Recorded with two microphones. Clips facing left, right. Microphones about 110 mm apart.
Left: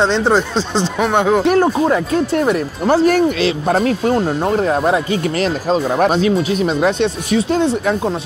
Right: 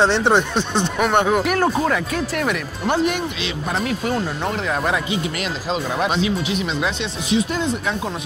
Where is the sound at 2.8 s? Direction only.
40° left (ahead or behind).